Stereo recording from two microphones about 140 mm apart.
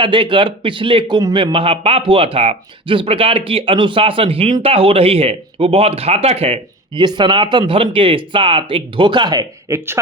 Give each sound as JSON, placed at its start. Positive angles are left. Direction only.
{"t": 0.0, "sound": "a man's voice", "side_deg": -35}
{"t": 7.0, "sound": "a man's voice", "side_deg": -30}